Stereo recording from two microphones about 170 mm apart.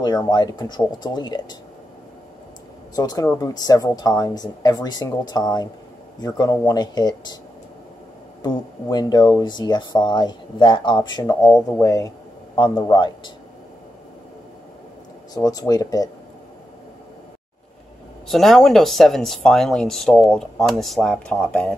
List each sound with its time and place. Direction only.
0.0 s speech: 25° left (ahead or behind)
3.0 s speech: 20° left (ahead or behind)
8.8 s speech: 25° left (ahead or behind)
15.3 s speech: 20° left (ahead or behind)
18.3 s speech: centre (ahead or behind)